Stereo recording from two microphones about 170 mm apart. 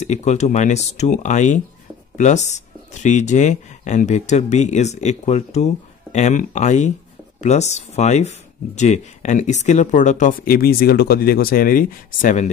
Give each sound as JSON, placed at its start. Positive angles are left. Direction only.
{"t": 0.0, "sound": "speech", "side_deg": 40}